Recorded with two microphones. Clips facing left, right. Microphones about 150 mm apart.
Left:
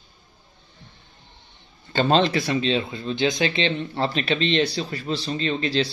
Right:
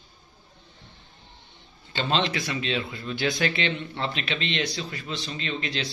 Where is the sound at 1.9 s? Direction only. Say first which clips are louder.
Left 7 dB; 45° left (ahead or behind); by 3.7 s 25° left (ahead or behind).